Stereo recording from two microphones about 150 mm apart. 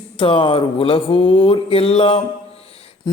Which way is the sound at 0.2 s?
35° left (ahead or behind).